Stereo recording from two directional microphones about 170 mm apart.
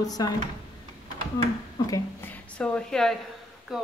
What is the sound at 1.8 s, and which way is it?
Speech, 20° left (ahead or behind).